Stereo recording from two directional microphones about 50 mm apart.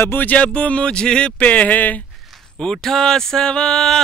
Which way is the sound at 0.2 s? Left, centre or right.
Left.